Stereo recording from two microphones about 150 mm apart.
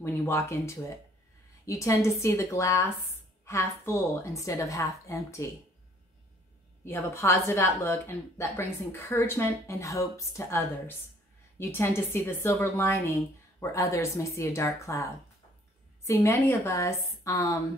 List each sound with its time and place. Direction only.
0.0 s speech: 15° left (ahead or behind)
6.8 s speech: 15° left (ahead or behind)